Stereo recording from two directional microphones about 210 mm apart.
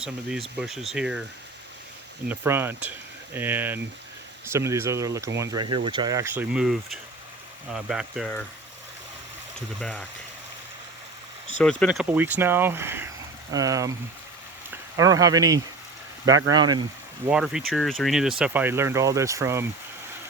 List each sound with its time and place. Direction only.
0.0 s speech: 5° right (ahead or behind)
2.2 s speech: 10° right (ahead or behind)
9.8 s speech: 5° left (ahead or behind)
11.6 s speech: 5° left (ahead or behind); by 16.8 s 20° right (ahead or behind)
17.2 s speech: 5° right (ahead or behind)